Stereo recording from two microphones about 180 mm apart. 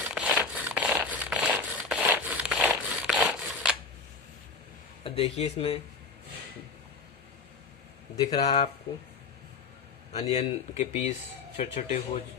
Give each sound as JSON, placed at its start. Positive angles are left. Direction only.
{"t": 0.0, "sound": "a sound", "side_deg": -5}
{"t": 5.0, "sound": "speech", "side_deg": 35}
{"t": 8.2, "sound": "speech", "side_deg": 20}
{"t": 10.2, "sound": "speech", "side_deg": 35}